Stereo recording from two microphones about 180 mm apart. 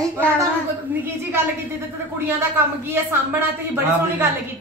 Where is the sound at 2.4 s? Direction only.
15° right (ahead or behind).